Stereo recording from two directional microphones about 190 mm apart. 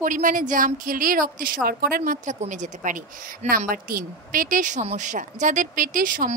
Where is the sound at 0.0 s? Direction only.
45° right (ahead or behind).